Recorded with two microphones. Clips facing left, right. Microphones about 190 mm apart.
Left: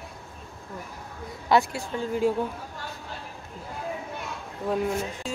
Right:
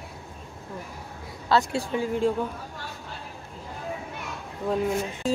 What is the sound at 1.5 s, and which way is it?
Speech, 15° left (ahead or behind).